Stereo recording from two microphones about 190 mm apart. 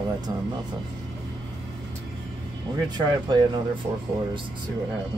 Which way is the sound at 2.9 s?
25° right (ahead or behind).